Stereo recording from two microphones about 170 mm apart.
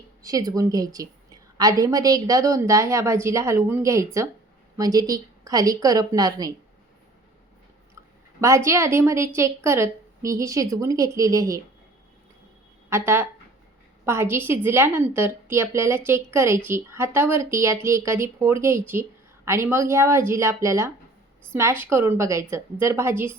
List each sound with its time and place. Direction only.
0.2 s a woman's voice: 20° right (ahead or behind)
8.4 s a woman's voice: 15° right (ahead or behind)
12.9 s a woman's voice: 15° right (ahead or behind)